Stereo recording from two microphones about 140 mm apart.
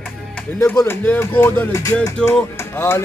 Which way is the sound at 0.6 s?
15° left (ahead or behind).